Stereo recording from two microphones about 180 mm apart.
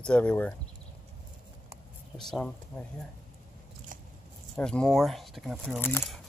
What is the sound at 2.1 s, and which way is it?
Speech, 5° left (ahead or behind).